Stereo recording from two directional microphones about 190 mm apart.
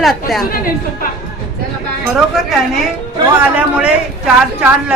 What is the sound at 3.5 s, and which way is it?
A woman's voice, 5° right (ahead or behind).